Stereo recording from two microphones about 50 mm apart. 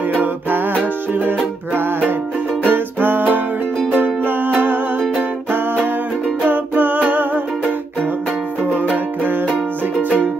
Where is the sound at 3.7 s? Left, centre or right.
Centre.